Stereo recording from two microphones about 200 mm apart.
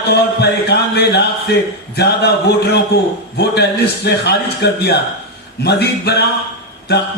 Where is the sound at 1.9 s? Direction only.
55° left (ahead or behind).